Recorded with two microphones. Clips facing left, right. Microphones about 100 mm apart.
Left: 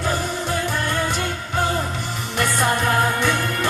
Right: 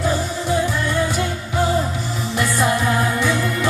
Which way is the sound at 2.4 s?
55° left (ahead or behind).